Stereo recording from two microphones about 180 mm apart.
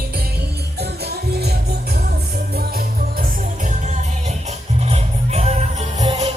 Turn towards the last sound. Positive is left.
turn(degrees=-35)  # may be behind; listen again after turning